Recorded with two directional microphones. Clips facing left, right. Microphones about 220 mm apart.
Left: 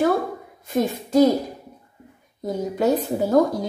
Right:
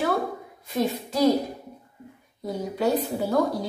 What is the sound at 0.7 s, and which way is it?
Speech, 45° left (ahead or behind).